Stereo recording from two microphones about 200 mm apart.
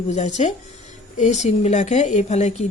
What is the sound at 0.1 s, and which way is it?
Speech, 35° left (ahead or behind).